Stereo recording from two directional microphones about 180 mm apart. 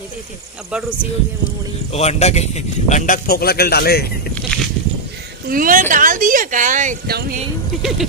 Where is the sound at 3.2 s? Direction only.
60° left (ahead or behind).